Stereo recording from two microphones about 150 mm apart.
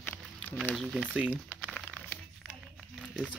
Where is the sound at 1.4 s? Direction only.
10° left (ahead or behind).